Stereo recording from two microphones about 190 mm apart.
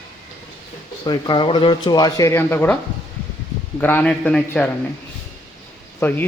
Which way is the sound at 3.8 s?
10° left (ahead or behind).